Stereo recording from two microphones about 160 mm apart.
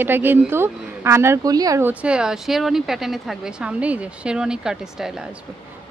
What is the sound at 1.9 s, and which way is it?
Speech, 5° right (ahead or behind).